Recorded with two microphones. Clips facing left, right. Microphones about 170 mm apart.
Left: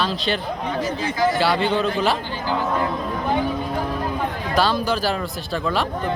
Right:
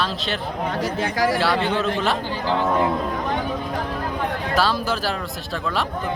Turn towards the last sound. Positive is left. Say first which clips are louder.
# left 2 dB
turn(degrees=-5)  # may be behind; listen again after turning